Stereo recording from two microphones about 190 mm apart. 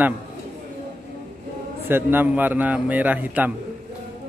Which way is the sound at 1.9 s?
10° right (ahead or behind).